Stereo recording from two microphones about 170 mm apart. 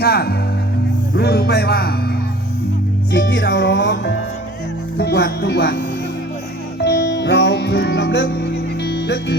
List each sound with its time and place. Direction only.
0.0 s speech: 70° left (ahead or behind)
3.1 s music: 90° left
4.9 s speech: 85° left
6.7 s music: 80° left